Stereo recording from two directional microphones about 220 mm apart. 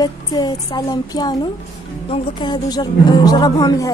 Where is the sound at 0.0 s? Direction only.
20° left (ahead or behind).